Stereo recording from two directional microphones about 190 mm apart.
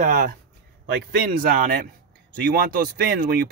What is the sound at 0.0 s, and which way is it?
Speech, 40° right (ahead or behind).